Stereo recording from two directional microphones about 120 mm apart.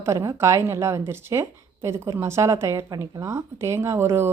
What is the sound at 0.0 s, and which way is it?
Speech, 25° right (ahead or behind).